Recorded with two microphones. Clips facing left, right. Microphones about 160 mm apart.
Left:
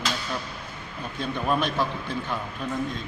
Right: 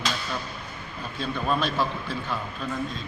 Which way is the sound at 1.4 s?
15° left (ahead or behind).